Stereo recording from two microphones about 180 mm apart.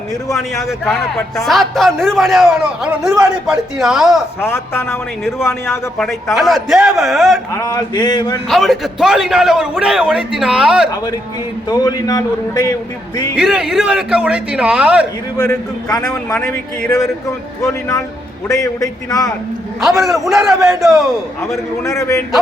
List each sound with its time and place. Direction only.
0.3 s a man's voice: 15° left (ahead or behind)
0.9 s a man's voice: centre (ahead or behind)
4.4 s a man's voice: 15° left (ahead or behind)
6.3 s a man's voice: centre (ahead or behind)
7.5 s a man's voice: 20° left (ahead or behind)
8.4 s a man's voice: centre (ahead or behind)
11.7 s a man's voice: 20° left (ahead or behind)
13.3 s a man's voice: 5° right (ahead or behind)
15.4 s a man's voice: 15° left (ahead or behind)
16.4 s a man's voice: 5° left (ahead or behind)
17.0 s a man's voice: 15° left (ahead or behind)
19.8 s a man's voice: centre (ahead or behind)
21.8 s a man's voice: 15° left (ahead or behind)